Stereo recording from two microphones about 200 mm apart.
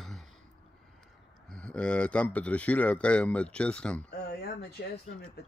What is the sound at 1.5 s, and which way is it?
A man's voice, 5° left (ahead or behind).